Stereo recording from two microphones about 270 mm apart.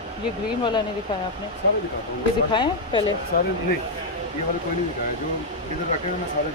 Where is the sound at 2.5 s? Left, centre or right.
Centre.